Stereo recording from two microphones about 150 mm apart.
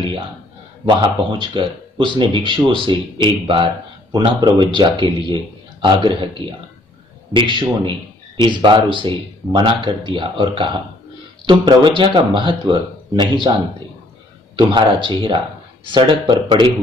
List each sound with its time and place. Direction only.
0.8 s speech: 30° right (ahead or behind)
14.6 s speech: 30° right (ahead or behind)